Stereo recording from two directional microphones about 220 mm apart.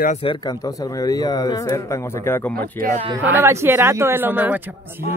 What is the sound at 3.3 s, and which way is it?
Speech, 10° right (ahead or behind).